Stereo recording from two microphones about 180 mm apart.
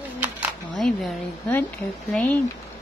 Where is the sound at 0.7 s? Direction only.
5° left (ahead or behind).